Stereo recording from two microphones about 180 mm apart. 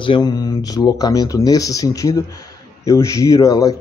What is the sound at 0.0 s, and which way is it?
Speech, 25° left (ahead or behind).